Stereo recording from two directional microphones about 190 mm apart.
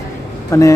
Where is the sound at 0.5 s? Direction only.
15° left (ahead or behind).